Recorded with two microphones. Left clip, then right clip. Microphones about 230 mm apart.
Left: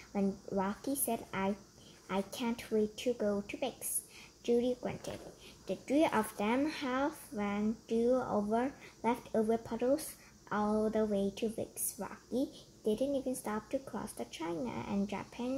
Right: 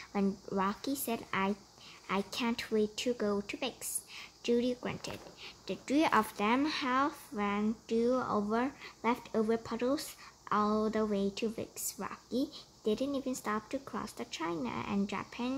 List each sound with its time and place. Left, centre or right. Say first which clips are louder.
0.1 s speech: right 1 dB; right